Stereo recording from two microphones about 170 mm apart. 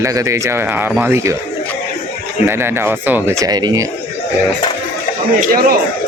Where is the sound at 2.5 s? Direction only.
15° right (ahead or behind).